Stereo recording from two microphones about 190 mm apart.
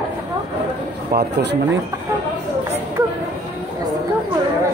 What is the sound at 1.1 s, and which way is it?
Speech, 55° right (ahead or behind).